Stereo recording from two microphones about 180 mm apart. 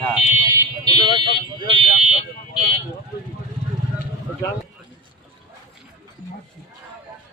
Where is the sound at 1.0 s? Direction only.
25° left (ahead or behind).